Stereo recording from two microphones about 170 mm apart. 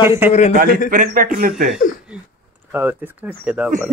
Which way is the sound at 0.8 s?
50° right (ahead or behind).